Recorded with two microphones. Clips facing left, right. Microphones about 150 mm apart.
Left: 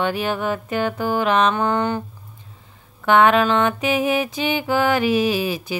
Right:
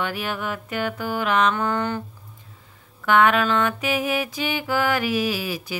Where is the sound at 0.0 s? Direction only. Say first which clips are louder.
Left 5 dB; 25° left (ahead or behind).